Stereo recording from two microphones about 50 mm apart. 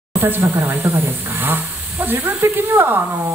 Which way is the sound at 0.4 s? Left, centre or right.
Right.